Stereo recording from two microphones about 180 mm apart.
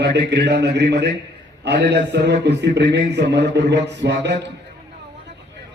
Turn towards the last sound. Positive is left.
turn(degrees=-75)  # may be behind; listen again after turning